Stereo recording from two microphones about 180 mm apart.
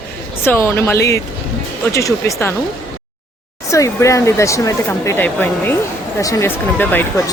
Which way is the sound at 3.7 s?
15° left (ahead or behind).